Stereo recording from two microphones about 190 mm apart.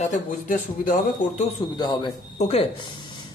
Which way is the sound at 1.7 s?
25° left (ahead or behind).